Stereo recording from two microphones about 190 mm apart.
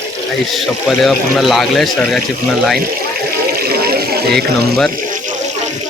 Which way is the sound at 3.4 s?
55° right (ahead or behind).